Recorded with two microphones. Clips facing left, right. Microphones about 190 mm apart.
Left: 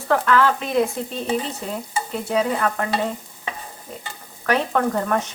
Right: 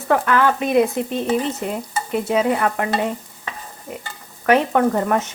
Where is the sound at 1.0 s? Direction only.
60° right (ahead or behind).